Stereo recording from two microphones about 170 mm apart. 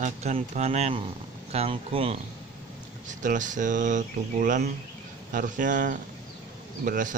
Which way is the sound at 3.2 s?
50° right (ahead or behind).